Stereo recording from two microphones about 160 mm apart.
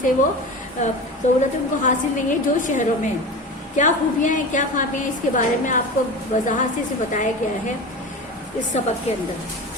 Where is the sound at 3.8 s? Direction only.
50° left (ahead or behind).